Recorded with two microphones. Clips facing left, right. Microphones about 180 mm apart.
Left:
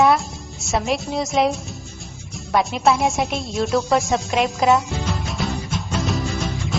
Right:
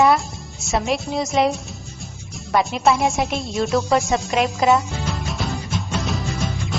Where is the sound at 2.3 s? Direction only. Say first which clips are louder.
Even; centre (ahead or behind).